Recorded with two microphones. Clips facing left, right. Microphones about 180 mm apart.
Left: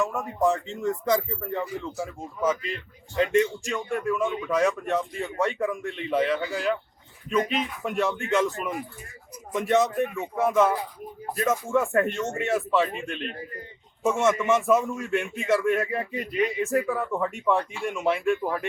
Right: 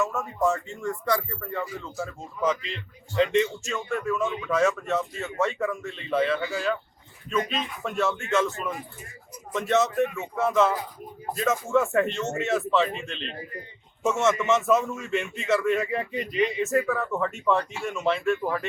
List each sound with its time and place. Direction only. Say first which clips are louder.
0.1 s a man's voice: left 1 dB; 15° left (ahead or behind)